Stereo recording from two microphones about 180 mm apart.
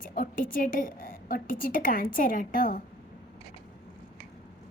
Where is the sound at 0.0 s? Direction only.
50° left (ahead or behind).